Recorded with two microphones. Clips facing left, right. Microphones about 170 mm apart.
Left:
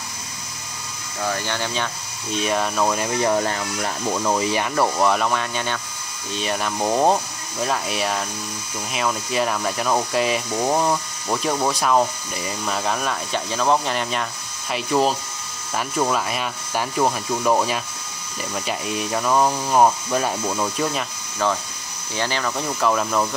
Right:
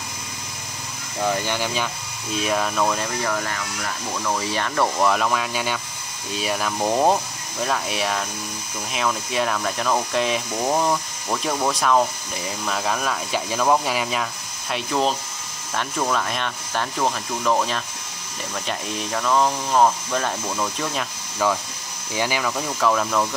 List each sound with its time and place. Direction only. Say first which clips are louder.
1.2 s speech: right 2 dB; 15° right (ahead or behind); by 3.1 s 10° left (ahead or behind)
3.3 s speech: left 5 dB; 30° left (ahead or behind)
4.4 s speech: left 2 dB; 15° left (ahead or behind); by 14.2 s 5° right (ahead or behind)
14.7 s speech: left 2 dB; 5° left (ahead or behind)
20.9 s speech: left 1 dB; 5° right (ahead or behind)